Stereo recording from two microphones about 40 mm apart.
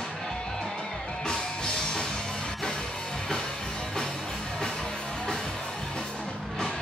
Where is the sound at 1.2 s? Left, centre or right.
Centre.